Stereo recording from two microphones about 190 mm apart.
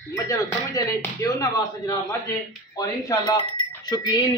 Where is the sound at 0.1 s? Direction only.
15° left (ahead or behind).